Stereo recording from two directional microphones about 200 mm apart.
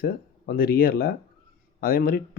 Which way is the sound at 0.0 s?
50° left (ahead or behind).